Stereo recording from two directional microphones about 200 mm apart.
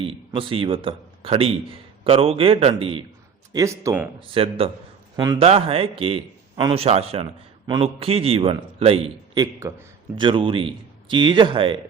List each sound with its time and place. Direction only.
0.0 s a man's voice: 25° right (ahead or behind)
3.5 s speech: 15° right (ahead or behind)
4.2 s a man's voice: 30° right (ahead or behind)
5.4 s a man's voice: 30° right (ahead or behind)